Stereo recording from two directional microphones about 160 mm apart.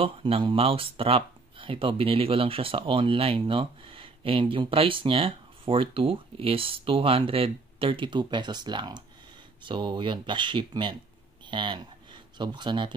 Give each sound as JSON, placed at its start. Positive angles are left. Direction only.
{"t": 0.0, "sound": "speech", "side_deg": -35}